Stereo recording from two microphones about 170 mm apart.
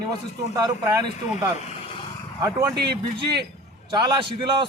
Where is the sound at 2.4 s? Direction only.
20° right (ahead or behind).